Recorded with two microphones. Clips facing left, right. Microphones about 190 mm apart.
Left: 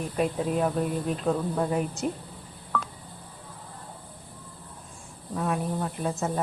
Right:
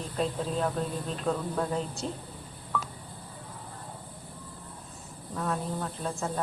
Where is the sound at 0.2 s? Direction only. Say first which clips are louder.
Left 4 dB; 10° left (ahead or behind).